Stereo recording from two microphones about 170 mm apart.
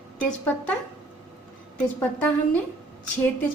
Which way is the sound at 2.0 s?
10° left (ahead or behind).